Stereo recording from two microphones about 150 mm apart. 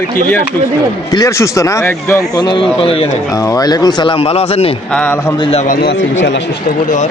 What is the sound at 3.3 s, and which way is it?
Speech, 25° left (ahead or behind).